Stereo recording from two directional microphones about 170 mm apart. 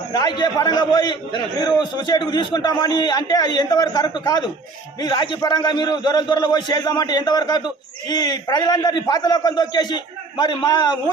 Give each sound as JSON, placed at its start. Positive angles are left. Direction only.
{"t": 0.1, "sound": "a man's voice", "side_deg": 25}